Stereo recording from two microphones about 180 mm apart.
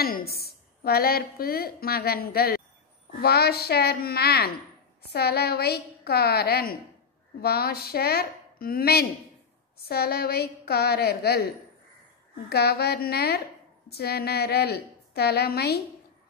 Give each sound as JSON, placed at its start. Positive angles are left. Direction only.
{"t": 0.0, "sound": "a woman's voice", "side_deg": 55}
{"t": 12.4, "sound": "a woman's voice", "side_deg": 60}